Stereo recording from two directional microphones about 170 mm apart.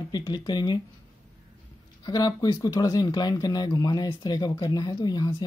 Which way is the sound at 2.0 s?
25° left (ahead or behind).